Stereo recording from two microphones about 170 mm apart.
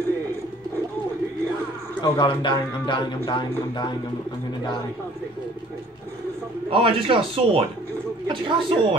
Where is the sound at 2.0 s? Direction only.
30° left (ahead or behind).